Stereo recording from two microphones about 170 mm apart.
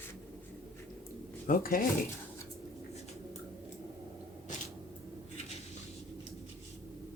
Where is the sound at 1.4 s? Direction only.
55° left (ahead or behind).